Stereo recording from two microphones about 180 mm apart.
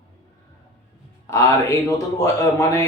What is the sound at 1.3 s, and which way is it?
A man's voice, 15° left (ahead or behind).